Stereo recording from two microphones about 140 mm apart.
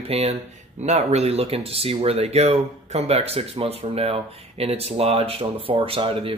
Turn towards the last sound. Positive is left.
turn(degrees=-40)  # may be behind; listen again after turning